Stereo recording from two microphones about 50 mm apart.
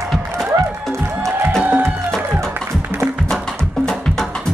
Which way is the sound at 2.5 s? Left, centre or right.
Right.